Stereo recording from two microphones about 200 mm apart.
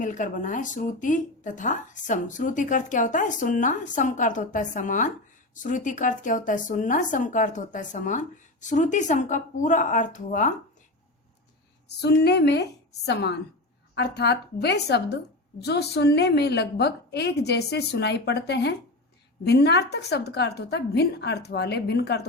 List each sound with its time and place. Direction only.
0.0 s speech: 40° left (ahead or behind)
12.0 s a woman's voice: 55° left (ahead or behind)